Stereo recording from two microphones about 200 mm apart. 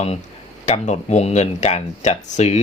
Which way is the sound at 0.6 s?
35° left (ahead or behind).